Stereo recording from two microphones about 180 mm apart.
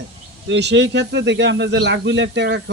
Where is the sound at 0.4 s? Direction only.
70° right (ahead or behind).